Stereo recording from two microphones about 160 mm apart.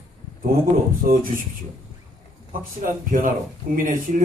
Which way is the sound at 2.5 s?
60° right (ahead or behind).